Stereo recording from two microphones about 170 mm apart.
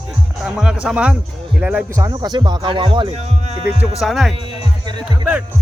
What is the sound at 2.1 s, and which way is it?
Speech, 25° right (ahead or behind).